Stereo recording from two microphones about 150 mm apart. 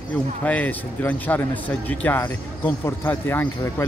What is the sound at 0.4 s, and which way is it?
A man's voice, 10° left (ahead or behind).